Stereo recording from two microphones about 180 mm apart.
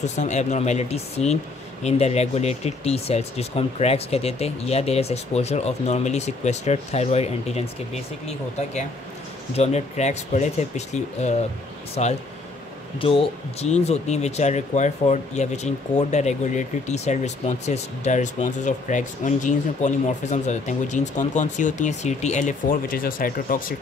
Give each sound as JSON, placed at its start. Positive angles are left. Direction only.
{"t": 0.0, "sound": "speech", "side_deg": 40}